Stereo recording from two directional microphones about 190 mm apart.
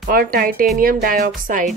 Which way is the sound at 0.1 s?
50° right (ahead or behind).